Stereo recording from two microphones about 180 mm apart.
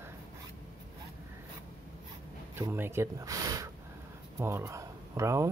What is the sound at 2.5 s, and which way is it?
Speech, 10° right (ahead or behind).